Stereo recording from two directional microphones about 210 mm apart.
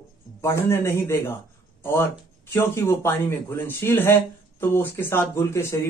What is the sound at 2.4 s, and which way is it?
A man's voice, 10° left (ahead or behind).